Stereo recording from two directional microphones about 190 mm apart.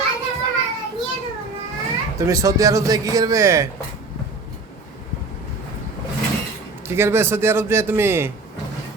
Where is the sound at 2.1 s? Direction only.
15° right (ahead or behind).